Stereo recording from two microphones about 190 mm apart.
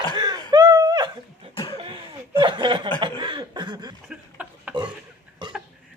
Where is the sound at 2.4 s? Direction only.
25° right (ahead or behind).